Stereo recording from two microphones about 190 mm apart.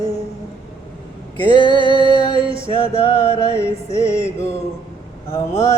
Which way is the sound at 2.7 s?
35° left (ahead or behind).